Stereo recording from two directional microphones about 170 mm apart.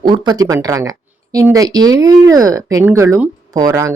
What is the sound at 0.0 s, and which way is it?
Speech, 25° right (ahead or behind).